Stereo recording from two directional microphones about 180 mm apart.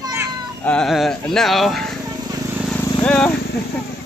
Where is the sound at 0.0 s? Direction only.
15° right (ahead or behind).